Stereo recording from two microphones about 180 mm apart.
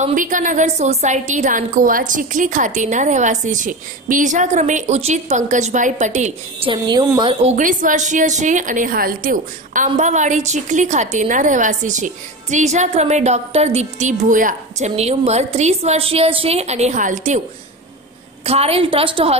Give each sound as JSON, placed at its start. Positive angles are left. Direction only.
{"t": 0.0, "sound": "a woman's voice", "side_deg": -45}
{"t": 6.7, "sound": "a woman's voice", "side_deg": -25}
{"t": 7.4, "sound": "a woman's voice", "side_deg": -45}
{"t": 9.8, "sound": "a woman's voice", "side_deg": -40}
{"t": 18.4, "sound": "a woman's voice", "side_deg": -35}